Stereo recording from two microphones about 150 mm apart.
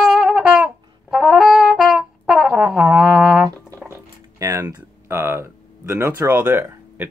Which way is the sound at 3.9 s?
20° right (ahead or behind).